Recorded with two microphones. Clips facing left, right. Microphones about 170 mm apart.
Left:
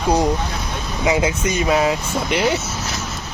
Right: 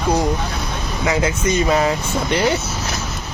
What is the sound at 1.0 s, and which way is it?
Speech, 15° left (ahead or behind).